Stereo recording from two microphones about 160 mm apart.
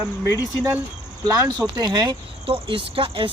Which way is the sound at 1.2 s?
20° right (ahead or behind).